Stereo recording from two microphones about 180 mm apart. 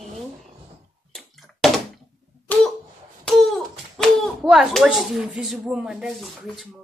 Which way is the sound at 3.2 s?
Centre (ahead or behind).